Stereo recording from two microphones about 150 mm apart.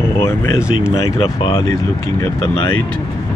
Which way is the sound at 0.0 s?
15° left (ahead or behind).